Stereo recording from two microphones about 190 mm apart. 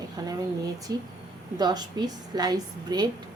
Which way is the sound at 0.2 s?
20° right (ahead or behind).